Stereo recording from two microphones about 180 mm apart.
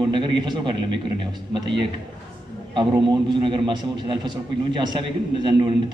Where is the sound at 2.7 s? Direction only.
25° right (ahead or behind).